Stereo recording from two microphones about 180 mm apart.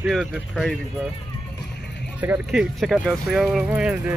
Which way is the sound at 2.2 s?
5° right (ahead or behind).